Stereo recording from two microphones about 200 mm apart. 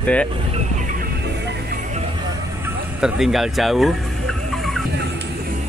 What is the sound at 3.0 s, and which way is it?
Music, centre (ahead or behind).